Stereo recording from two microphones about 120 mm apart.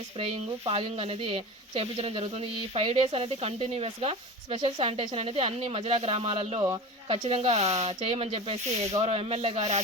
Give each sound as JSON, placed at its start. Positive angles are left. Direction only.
{"t": 0.2, "sound": "speech", "side_deg": -50}